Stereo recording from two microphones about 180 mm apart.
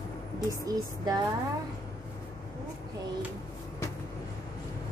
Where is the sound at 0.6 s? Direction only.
20° right (ahead or behind).